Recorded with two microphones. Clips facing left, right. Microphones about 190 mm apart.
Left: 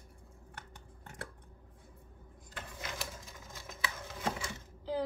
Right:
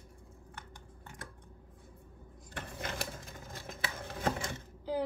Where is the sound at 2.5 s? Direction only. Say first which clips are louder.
Right 4 dB; 55° right (ahead or behind).